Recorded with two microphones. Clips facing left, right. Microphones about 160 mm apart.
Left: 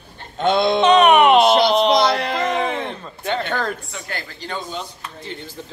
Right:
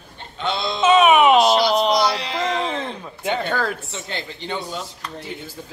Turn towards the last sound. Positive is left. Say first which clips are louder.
# even
turn(degrees=-10)  # may be behind; listen again after turning